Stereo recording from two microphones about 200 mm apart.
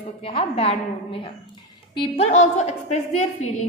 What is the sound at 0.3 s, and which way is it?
A woman's voice, 30° left (ahead or behind).